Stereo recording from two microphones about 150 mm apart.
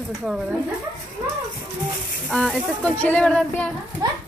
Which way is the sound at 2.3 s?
Centre (ahead or behind).